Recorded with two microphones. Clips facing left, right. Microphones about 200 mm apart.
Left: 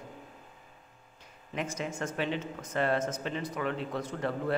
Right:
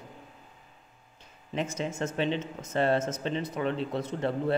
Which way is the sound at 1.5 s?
25° right (ahead or behind).